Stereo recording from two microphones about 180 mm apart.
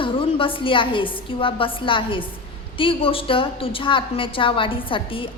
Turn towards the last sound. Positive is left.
turn(degrees=30)  # may be behind; listen again after turning